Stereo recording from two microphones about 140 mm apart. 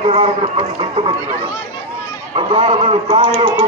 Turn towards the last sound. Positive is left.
turn(degrees=-30)  # may be behind; listen again after turning